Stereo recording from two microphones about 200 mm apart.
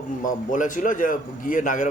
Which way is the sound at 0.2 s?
40° left (ahead or behind).